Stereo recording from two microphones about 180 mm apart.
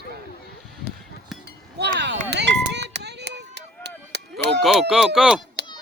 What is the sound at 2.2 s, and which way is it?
Run, 70° right (ahead or behind).